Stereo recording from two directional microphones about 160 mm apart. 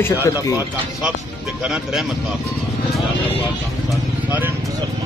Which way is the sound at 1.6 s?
5° right (ahead or behind).